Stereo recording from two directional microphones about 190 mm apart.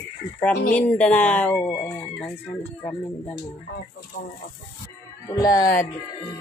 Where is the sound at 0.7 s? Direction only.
5° left (ahead or behind).